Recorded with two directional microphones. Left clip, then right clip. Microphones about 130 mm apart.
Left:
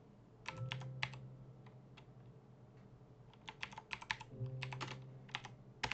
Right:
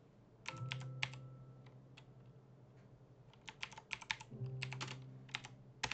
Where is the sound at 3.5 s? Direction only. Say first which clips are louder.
Left 1 dB; 15° right (ahead or behind).